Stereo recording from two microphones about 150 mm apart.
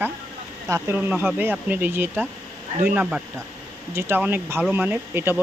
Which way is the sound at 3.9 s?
15° right (ahead or behind).